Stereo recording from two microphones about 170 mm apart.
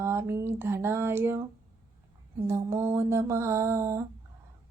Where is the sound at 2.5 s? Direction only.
15° right (ahead or behind).